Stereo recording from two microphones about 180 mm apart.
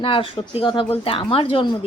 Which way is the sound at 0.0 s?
30° left (ahead or behind).